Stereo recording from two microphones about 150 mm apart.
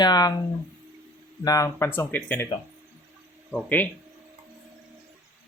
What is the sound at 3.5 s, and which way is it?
Speech, 10° left (ahead or behind).